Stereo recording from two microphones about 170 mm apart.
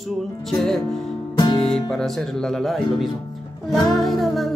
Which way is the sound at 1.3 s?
30° left (ahead or behind).